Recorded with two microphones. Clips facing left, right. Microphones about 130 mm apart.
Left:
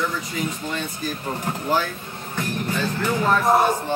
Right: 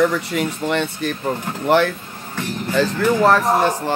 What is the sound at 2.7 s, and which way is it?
Speech, 90° right.